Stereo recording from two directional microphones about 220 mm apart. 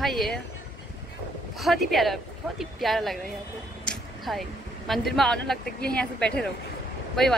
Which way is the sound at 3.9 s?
Centre (ahead or behind).